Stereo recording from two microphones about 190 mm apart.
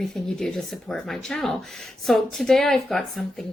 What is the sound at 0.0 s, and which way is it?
Speech, centre (ahead or behind).